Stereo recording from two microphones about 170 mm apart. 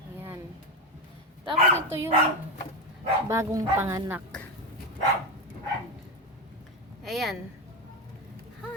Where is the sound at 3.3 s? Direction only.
20° right (ahead or behind).